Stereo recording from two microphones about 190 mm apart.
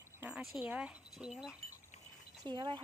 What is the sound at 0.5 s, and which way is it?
Speech, 5° right (ahead or behind).